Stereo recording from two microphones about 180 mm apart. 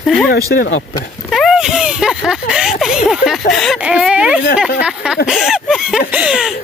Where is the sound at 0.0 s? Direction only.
Centre (ahead or behind).